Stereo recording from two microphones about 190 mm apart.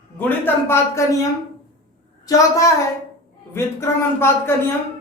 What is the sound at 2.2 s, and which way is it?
A woman's voice, 15° left (ahead or behind).